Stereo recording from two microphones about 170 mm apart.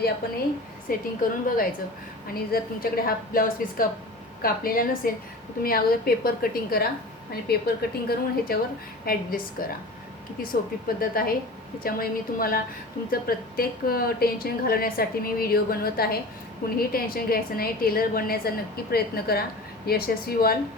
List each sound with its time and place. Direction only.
0.9 s a woman's voice: 55° left (ahead or behind)